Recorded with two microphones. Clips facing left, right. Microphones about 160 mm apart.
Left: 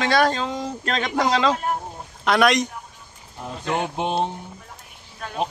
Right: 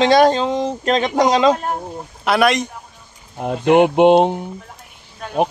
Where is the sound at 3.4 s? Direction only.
80° right.